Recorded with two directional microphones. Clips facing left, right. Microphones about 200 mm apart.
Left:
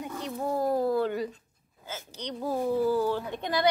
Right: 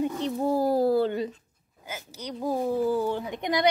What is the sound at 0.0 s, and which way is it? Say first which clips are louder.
Bird: right 6 dB; 25° right (ahead or behind).